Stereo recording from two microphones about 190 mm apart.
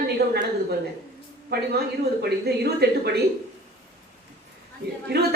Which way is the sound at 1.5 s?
60° right (ahead or behind).